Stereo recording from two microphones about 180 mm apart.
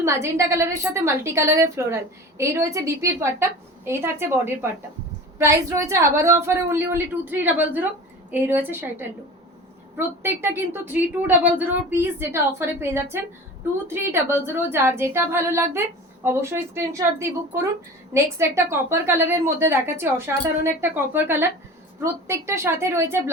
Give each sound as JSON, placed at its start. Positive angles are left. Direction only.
{"t": 0.0, "sound": "a woman's voice", "side_deg": -15}
{"t": 10.2, "sound": "a woman's voice", "side_deg": -10}